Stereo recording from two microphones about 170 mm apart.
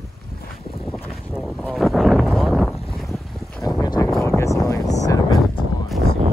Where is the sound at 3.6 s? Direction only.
25° left (ahead or behind).